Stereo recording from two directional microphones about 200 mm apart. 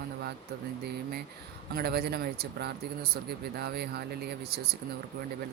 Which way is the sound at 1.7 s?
50° right (ahead or behind).